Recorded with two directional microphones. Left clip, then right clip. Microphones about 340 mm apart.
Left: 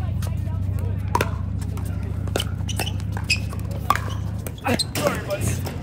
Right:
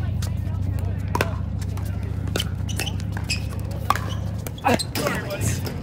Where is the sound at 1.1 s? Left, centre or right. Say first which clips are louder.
Left 2 dB; left.